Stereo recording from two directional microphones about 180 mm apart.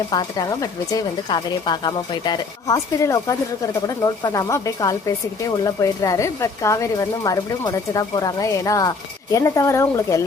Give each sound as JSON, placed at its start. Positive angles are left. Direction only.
{"t": 0.1, "sound": "speech", "side_deg": 20}